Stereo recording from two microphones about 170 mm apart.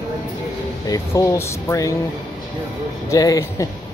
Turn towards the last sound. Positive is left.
turn(degrees=20)  # may be behind; listen again after turning